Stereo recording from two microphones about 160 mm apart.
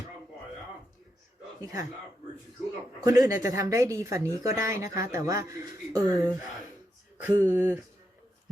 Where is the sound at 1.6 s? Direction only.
20° right (ahead or behind).